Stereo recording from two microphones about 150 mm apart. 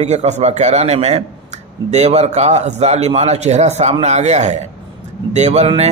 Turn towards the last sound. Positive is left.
turn(degrees=-45)  # may be behind; listen again after turning